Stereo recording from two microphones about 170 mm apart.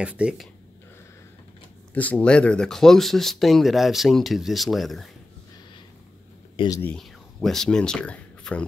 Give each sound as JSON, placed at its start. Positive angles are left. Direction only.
{"t": 0.0, "sound": "speech", "side_deg": -5}
{"t": 2.0, "sound": "speech", "side_deg": 10}
{"t": 6.5, "sound": "speech", "side_deg": 30}
{"t": 6.8, "sound": "speech", "side_deg": 5}